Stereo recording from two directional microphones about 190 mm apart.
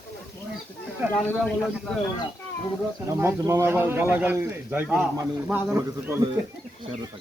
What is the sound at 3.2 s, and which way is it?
A man's voice, 15° right (ahead or behind).